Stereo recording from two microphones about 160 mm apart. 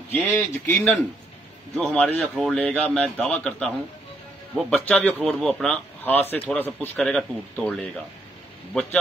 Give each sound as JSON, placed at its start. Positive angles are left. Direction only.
{"t": 0.1, "sound": "speech", "side_deg": 10}